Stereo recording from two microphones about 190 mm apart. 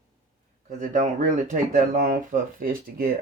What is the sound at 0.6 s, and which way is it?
Speech, 40° right (ahead or behind).